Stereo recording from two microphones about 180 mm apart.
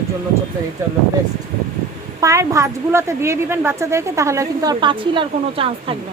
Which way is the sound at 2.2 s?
15° right (ahead or behind).